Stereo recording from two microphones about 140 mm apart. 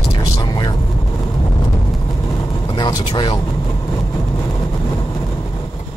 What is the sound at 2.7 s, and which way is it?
Speech, 35° left (ahead or behind).